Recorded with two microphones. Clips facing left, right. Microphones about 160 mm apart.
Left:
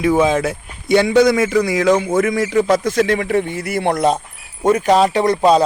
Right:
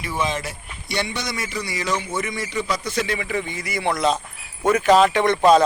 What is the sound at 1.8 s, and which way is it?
Speech, 90° left.